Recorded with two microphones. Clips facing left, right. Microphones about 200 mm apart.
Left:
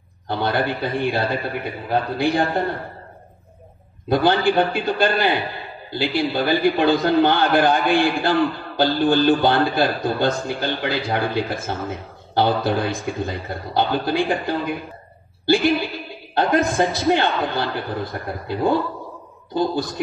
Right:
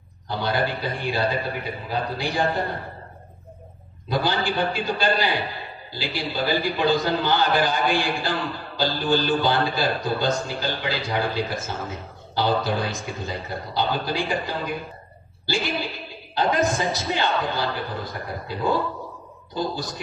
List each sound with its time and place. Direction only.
0.3 s a man's voice: 55° left (ahead or behind)
4.1 s a man's voice: 55° left (ahead or behind)
19.5 s a man's voice: 55° left (ahead or behind)